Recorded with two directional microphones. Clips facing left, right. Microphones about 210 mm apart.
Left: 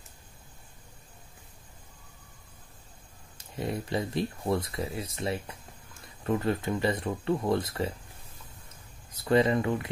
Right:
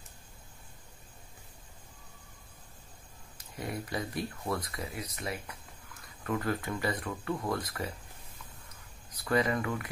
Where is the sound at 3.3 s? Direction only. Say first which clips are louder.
Left 5 dB; 25° left (ahead or behind).